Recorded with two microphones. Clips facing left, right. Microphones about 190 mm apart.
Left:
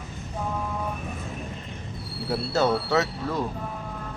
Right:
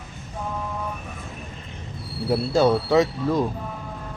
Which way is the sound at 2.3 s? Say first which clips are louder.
Right 5 dB; 10° right (ahead or behind).